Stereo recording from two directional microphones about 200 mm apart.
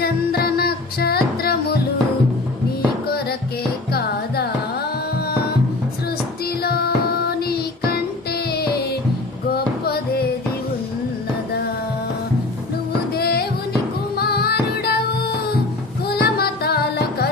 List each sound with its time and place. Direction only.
0.0 s music: 50° left (ahead or behind)
3.9 s carnatic music: 50° left (ahead or behind)
6.4 s child singing: 50° left (ahead or behind)
7.9 s music: 50° left (ahead or behind)
13.1 s music: 50° left (ahead or behind)